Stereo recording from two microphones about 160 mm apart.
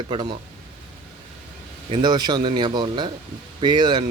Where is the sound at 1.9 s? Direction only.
25° right (ahead or behind).